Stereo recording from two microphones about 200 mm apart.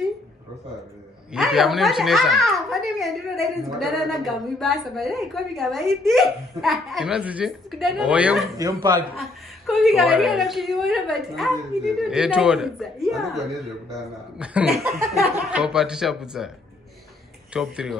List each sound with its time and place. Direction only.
1.3 s a woman's voice: centre (ahead or behind)